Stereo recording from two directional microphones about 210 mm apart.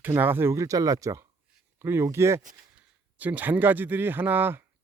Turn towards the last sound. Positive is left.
turn(degrees=-10)  # may be behind; listen again after turning